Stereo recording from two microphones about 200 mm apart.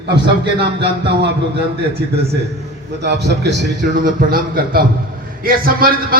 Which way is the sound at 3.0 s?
60° right (ahead or behind).